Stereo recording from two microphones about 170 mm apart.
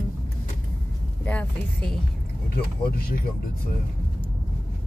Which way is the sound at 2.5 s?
65° left (ahead or behind).